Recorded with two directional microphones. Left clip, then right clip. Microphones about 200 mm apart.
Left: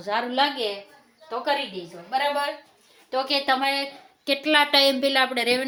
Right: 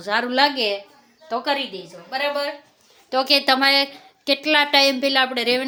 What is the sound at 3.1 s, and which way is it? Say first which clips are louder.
Speech: right 5 dB; 55° right (ahead or behind).